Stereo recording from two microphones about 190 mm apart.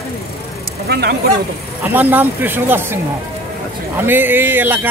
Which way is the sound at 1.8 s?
10° right (ahead or behind).